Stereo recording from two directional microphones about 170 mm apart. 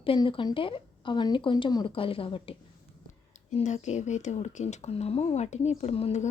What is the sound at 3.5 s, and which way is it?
A woman's voice, 45° left (ahead or behind).